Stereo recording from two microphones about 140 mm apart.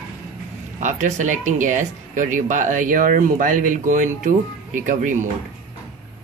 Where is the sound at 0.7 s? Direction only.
60° right (ahead or behind).